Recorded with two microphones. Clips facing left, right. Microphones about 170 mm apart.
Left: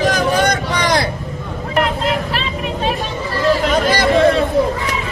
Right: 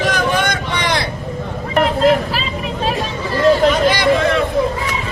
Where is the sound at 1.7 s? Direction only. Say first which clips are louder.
Right 5 dB; centre (ahead or behind).